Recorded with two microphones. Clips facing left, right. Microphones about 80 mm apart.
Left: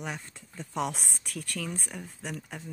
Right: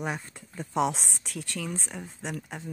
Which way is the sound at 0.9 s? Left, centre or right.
Right.